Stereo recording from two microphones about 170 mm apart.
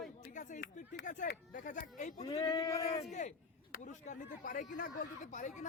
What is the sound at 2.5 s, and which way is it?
Speech, 20° left (ahead or behind).